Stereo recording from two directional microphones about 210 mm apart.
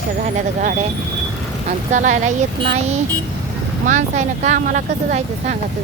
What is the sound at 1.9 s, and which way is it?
Speech, 35° right (ahead or behind).